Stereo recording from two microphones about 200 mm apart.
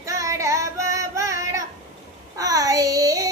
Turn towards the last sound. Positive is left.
turn(degrees=-15)  # may be behind; listen again after turning